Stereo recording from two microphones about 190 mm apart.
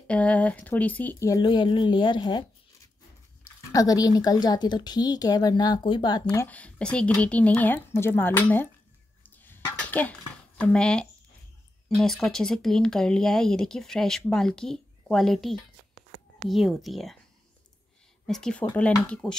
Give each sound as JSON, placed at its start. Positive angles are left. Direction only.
{"t": 0.0, "sound": "speech", "side_deg": 5}
{"t": 3.4, "sound": "speech", "side_deg": 20}
{"t": 6.4, "sound": "speech", "side_deg": 5}
{"t": 9.3, "sound": "dishes", "side_deg": 10}
{"t": 10.6, "sound": "speech", "side_deg": 5}
{"t": 18.2, "sound": "speech", "side_deg": 5}